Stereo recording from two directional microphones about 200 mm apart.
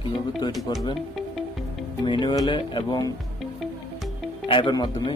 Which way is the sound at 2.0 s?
25° left (ahead or behind).